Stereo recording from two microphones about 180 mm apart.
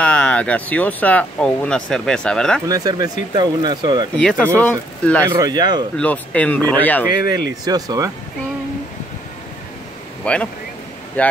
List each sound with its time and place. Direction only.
0.0 s speech: 5° left (ahead or behind)
2.7 s speech: 20° right (ahead or behind)
4.2 s speech: 5° left (ahead or behind)
5.3 s speech: 25° right (ahead or behind)
5.9 s speech: 10° left (ahead or behind)
7.3 s speech: 20° right (ahead or behind)
10.2 s speech: 5° left (ahead or behind)